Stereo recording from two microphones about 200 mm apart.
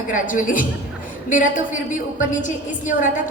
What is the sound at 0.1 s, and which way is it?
A woman's voice, 40° left (ahead or behind).